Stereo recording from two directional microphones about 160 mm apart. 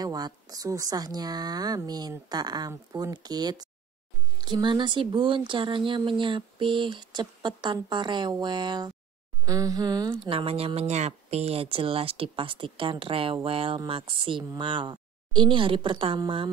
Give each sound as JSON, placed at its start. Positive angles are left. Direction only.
{"t": 0.0, "sound": "speech", "side_deg": -25}